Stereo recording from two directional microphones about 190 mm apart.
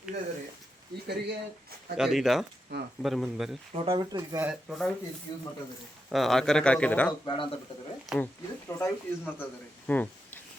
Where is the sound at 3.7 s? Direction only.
25° right (ahead or behind).